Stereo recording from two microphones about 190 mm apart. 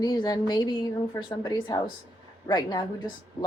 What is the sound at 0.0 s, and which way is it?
Speech, 20° left (ahead or behind).